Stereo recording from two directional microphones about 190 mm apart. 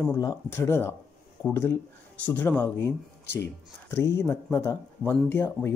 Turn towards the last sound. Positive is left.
turn(degrees=10)  # may be behind; listen again after turning